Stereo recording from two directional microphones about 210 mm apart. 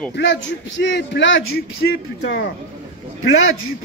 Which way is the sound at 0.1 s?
55° left (ahead or behind).